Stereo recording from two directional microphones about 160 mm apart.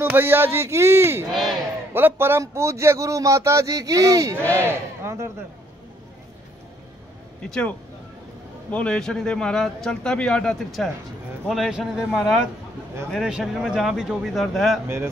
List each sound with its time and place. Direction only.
0.0 s speech: 15° right (ahead or behind)
1.3 s a sound: centre (ahead or behind)
2.0 s speech: 15° right (ahead or behind)
7.4 s speech: 5° left (ahead or behind)
8.7 s speech: 5° left (ahead or behind)